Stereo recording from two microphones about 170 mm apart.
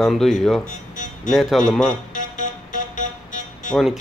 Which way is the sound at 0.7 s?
50° left (ahead or behind).